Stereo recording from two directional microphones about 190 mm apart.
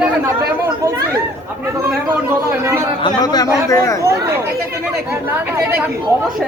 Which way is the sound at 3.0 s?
20° left (ahead or behind).